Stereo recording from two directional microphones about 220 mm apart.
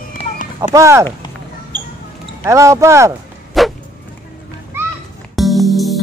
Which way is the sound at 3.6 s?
Centre (ahead or behind).